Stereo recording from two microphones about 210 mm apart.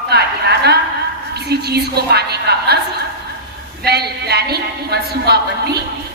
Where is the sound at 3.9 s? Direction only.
50° right (ahead or behind).